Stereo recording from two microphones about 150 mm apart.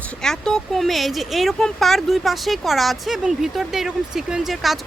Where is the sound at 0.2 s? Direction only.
5° left (ahead or behind).